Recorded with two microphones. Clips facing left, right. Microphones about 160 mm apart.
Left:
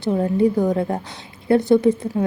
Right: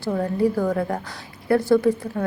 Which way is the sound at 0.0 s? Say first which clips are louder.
Left 3 dB; 20° left (ahead or behind).